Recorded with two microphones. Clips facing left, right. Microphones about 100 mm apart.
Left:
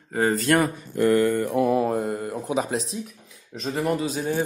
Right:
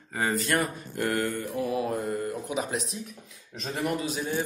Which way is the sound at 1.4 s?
65° left (ahead or behind).